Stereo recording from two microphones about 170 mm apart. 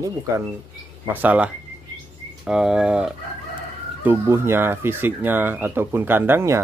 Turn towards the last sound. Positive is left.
turn(degrees=-15)  # may be behind; listen again after turning